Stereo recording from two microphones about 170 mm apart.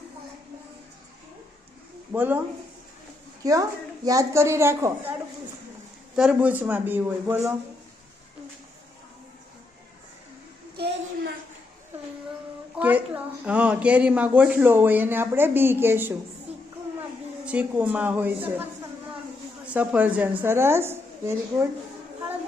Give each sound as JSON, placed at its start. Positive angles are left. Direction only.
{"t": 2.1, "sound": "a woman's voice", "side_deg": -10}
{"t": 3.4, "sound": "a woman's voice", "side_deg": -20}
{"t": 6.1, "sound": "a woman's voice", "side_deg": -5}
{"t": 10.8, "sound": "a sound", "side_deg": -75}
{"t": 12.7, "sound": "a woman's voice", "side_deg": -10}
{"t": 17.4, "sound": "a woman's voice", "side_deg": -10}